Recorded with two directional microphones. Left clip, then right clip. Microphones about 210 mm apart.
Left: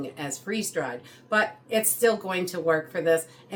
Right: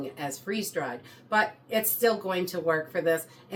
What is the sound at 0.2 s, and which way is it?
Speech, 20° left (ahead or behind).